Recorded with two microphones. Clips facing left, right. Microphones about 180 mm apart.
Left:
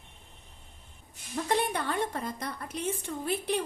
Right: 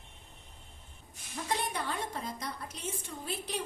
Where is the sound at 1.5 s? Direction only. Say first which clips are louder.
Left 5 dB; 60° left (ahead or behind).